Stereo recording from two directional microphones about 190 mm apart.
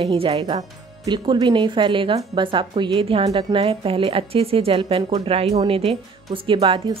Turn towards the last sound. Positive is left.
turn(degrees=-30)  # may be behind; listen again after turning